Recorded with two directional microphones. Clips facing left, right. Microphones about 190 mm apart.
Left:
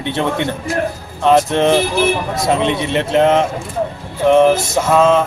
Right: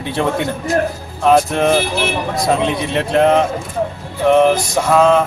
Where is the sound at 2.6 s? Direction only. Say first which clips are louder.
Left 1 dB; centre (ahead or behind).